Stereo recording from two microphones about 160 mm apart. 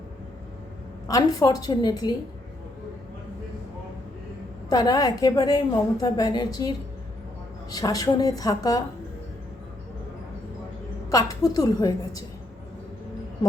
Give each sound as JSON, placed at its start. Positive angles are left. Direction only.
{"t": 1.0, "sound": "a woman's voice", "side_deg": 20}
{"t": 4.7, "sound": "a woman's voice", "side_deg": 25}
{"t": 11.1, "sound": "a woman's voice", "side_deg": 20}